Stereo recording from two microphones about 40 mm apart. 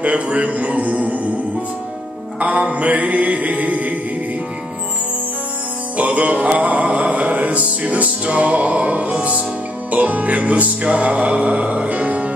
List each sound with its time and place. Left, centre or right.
0.0 s music: right
2.4 s music: right
5.9 s music: right